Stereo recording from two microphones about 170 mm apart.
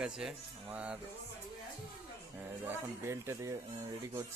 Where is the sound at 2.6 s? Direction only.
15° right (ahead or behind).